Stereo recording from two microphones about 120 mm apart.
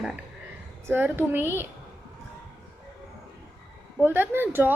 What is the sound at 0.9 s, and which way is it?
Speech, 20° right (ahead or behind).